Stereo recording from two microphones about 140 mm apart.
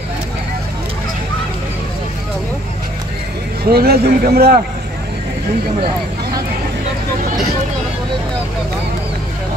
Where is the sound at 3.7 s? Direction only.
90° right.